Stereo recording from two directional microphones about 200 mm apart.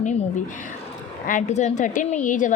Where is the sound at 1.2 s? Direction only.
35° left (ahead or behind).